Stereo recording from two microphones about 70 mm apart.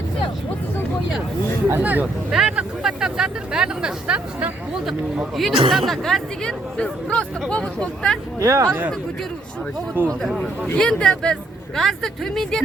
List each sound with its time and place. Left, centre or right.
1.8 s speech: right
2.3 s speech: centre
5.4 s speech: centre
8.4 s speech: right
10.1 s speech: centre